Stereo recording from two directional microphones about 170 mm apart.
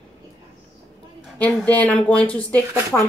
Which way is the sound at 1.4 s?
5° left (ahead or behind).